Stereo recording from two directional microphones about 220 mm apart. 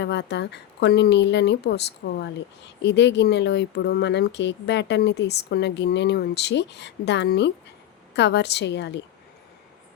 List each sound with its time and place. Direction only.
0.0 s speech: 50° left (ahead or behind)